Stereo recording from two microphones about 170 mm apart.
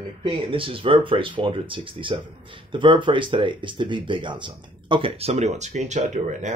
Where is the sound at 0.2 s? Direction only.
30° right (ahead or behind).